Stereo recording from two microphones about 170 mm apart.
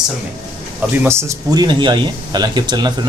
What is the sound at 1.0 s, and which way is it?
Speech, 15° right (ahead or behind).